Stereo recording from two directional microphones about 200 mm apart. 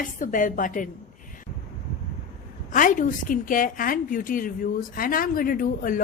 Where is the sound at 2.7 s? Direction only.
40° left (ahead or behind).